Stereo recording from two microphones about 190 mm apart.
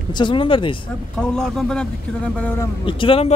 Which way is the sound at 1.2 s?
5° left (ahead or behind).